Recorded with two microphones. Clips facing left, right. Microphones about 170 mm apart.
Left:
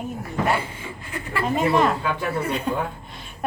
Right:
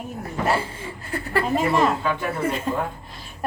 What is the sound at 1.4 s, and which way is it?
A woman's voice, centre (ahead or behind).